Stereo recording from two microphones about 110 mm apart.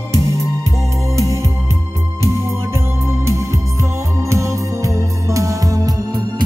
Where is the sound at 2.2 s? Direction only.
25° right (ahead or behind).